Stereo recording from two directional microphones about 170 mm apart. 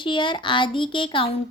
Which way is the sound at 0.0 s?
30° left (ahead or behind).